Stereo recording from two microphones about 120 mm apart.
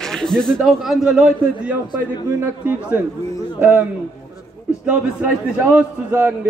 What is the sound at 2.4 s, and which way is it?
Speech, 15° right (ahead or behind).